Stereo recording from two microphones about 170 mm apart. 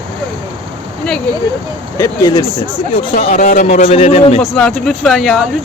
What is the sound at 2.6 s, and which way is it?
Speech, 30° left (ahead or behind).